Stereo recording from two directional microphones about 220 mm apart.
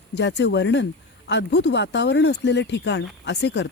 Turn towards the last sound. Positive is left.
turn(degrees=50)  # may be behind; listen again after turning